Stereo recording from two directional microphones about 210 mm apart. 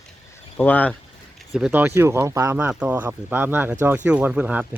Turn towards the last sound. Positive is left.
turn(degrees=-5)  # may be behind; listen again after turning